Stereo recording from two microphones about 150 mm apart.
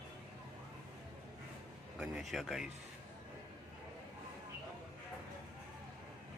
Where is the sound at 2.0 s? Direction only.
5° right (ahead or behind).